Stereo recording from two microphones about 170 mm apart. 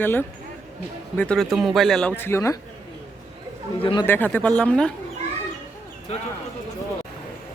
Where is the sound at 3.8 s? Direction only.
30° left (ahead or behind).